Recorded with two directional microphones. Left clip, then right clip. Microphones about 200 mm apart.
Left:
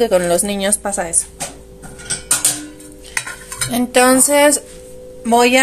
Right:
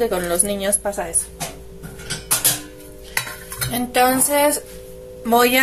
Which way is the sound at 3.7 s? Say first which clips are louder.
Left 5 dB; 30° left (ahead or behind).